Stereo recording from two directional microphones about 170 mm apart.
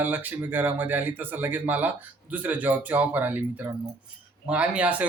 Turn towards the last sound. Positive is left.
turn(degrees=-10)  # may be behind; listen again after turning